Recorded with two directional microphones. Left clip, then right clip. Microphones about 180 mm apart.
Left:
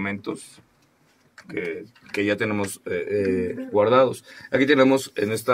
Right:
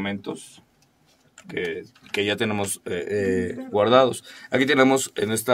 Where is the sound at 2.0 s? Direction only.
70° right (ahead or behind).